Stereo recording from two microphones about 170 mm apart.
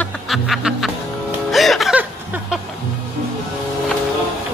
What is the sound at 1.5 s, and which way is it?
Chuckle, centre (ahead or behind).